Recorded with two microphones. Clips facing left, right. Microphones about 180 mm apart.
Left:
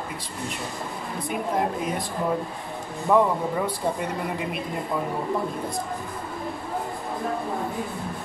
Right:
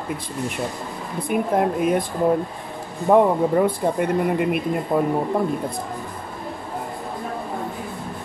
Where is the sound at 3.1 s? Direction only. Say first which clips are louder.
Right 5 dB; 55° right (ahead or behind).